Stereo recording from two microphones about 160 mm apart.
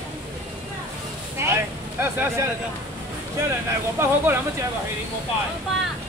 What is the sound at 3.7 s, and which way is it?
Speech, 15° right (ahead or behind).